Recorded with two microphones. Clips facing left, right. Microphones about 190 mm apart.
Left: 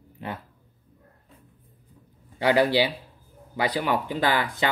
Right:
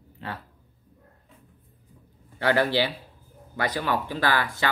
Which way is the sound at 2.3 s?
15° left (ahead or behind).